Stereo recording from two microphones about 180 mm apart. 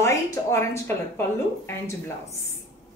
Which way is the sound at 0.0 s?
15° left (ahead or behind).